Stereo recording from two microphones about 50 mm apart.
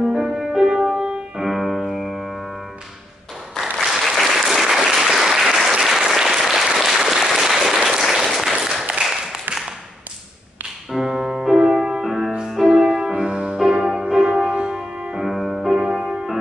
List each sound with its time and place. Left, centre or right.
0.1 s music: centre
3.8 s applause: centre
9.0 s a sound: centre
10.9 s music: centre
12.8 s music: centre
15.2 s music: centre